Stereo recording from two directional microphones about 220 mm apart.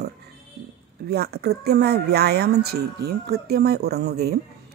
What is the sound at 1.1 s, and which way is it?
Speech, 45° right (ahead or behind).